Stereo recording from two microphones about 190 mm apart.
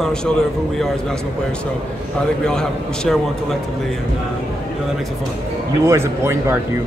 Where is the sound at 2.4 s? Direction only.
5° left (ahead or behind).